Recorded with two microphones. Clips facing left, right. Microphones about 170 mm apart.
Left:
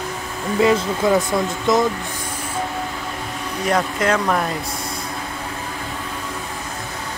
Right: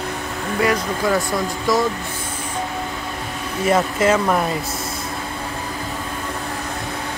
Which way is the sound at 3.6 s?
5° right (ahead or behind).